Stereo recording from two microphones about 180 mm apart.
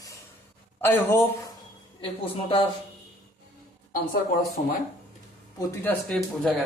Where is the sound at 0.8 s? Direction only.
15° left (ahead or behind).